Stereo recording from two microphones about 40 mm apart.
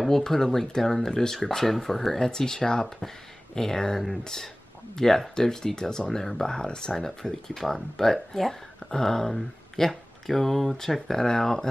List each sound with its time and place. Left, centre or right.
0.2 s speech: centre